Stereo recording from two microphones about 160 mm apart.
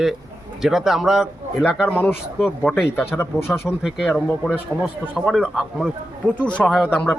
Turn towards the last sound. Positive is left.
turn(degrees=5)  # may be behind; listen again after turning